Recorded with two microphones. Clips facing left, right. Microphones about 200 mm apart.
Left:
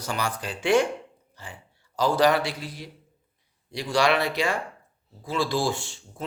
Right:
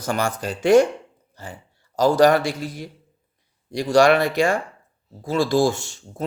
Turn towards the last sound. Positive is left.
turn(degrees=-45)  # may be behind; listen again after turning